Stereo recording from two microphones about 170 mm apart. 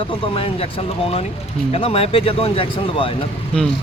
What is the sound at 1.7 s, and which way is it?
A man's voice, 35° left (ahead or behind).